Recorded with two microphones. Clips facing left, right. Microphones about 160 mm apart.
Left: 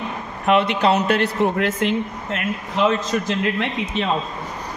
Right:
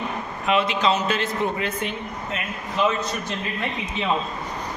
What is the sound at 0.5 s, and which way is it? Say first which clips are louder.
A man's voice: left 4 dB; 60° left (ahead or behind).